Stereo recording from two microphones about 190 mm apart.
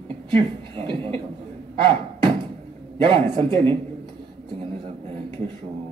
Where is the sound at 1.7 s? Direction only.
25° right (ahead or behind).